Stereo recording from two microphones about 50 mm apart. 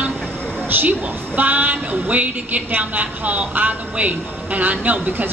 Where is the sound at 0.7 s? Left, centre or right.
Right.